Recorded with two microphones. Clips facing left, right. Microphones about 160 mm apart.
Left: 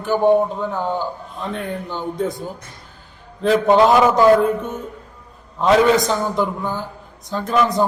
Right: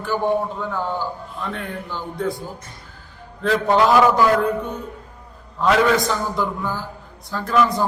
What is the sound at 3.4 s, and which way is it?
Speech, 20° left (ahead or behind).